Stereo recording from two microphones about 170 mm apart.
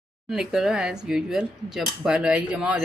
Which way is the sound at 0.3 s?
Centre (ahead or behind).